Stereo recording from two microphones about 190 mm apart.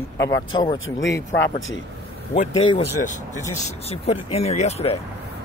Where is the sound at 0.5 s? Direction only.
25° left (ahead or behind).